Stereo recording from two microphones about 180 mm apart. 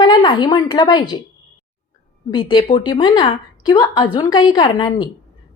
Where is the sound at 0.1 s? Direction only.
25° left (ahead or behind).